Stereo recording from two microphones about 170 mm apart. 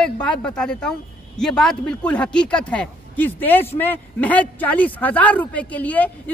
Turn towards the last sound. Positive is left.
turn(degrees=10)  # may be behind; listen again after turning